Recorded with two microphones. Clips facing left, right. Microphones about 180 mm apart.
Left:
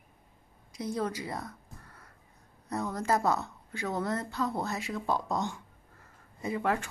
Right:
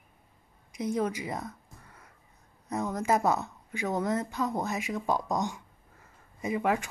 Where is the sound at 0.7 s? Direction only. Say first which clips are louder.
Right 3 dB; 20° right (ahead or behind).